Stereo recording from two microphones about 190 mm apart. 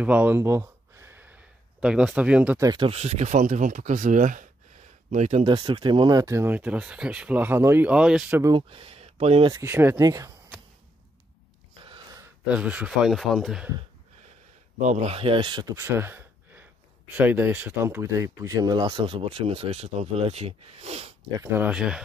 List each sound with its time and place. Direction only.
0.0 s a sound: 10° right (ahead or behind)
2.7 s speech: 30° right (ahead or behind); by 8.5 s 10° right (ahead or behind)
8.5 s speech: 30° right (ahead or behind)
9.5 s speech: 15° right (ahead or behind)
11.8 s a sound: 25° right (ahead or behind)
12.4 s speech: 5° right (ahead or behind)
14.8 s speech: 35° right (ahead or behind)
15.7 s a sound: 15° right (ahead or behind)
17.1 s speech: 10° right (ahead or behind); by 21.1 s 35° right (ahead or behind)
21.4 s speech: 10° right (ahead or behind)